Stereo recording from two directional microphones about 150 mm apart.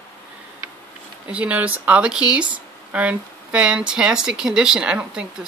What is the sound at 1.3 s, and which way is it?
Speech, 10° right (ahead or behind).